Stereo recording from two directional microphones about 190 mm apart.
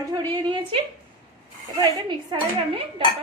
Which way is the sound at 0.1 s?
25° right (ahead or behind).